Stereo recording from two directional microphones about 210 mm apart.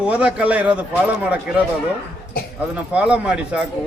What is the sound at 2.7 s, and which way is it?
Speech, 5° right (ahead or behind).